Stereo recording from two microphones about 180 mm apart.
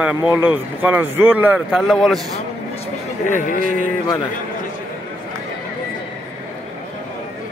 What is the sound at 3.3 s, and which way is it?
Speech, 45° left (ahead or behind).